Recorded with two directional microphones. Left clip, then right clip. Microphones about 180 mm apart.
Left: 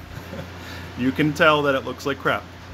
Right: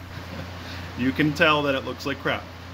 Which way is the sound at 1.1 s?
20° left (ahead or behind).